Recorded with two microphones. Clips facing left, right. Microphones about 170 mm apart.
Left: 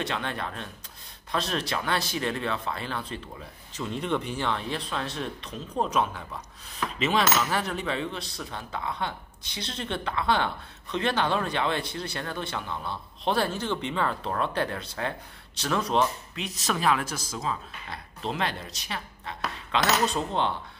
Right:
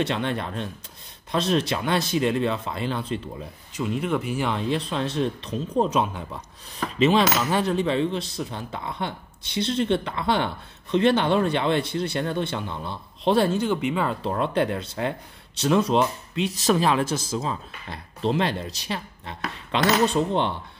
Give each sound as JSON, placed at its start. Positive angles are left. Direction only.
{"t": 0.0, "sound": "speech", "side_deg": -25}
{"t": 3.7, "sound": "speech", "side_deg": -5}
{"t": 13.7, "sound": "speech", "side_deg": -10}
{"t": 14.3, "sound": "speech", "side_deg": -20}